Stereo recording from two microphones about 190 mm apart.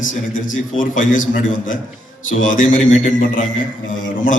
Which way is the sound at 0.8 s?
45° left (ahead or behind).